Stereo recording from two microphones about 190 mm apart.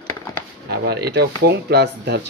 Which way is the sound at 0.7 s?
55° right (ahead or behind).